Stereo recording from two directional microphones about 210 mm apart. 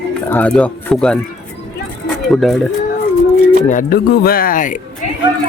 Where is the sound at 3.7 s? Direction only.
40° left (ahead or behind).